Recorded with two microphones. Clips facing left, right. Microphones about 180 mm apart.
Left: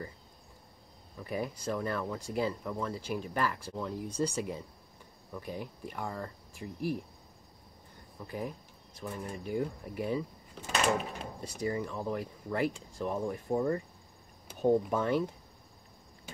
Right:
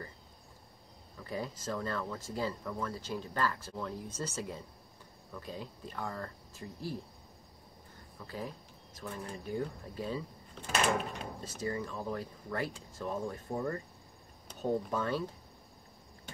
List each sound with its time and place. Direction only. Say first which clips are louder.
1.2 s speech: left 3 dB; 15° left (ahead or behind)
8.3 s speech: left 3 dB; 15° left (ahead or behind)
10.5 s speech: left 1 dB; 5° left (ahead or behind)
11.4 s speech: left 4 dB; 15° left (ahead or behind)